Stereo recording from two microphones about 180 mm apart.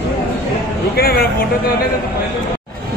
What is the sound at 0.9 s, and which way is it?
Speech, 55° left (ahead or behind).